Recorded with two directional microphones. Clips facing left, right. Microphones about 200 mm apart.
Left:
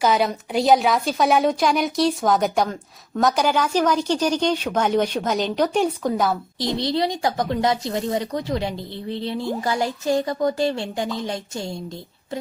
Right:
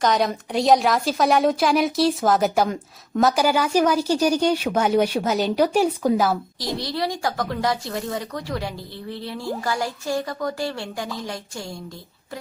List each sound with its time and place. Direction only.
0.0 s a woman's voice: centre (ahead or behind)
6.7 s speech: 20° left (ahead or behind)